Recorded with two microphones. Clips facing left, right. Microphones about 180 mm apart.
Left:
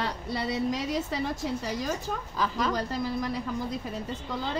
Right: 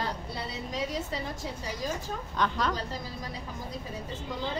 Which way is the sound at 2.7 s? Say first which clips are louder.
Left 7 dB; 70° left (ahead or behind).